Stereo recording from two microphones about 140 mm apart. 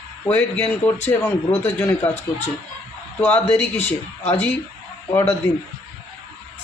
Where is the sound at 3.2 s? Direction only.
15° left (ahead or behind).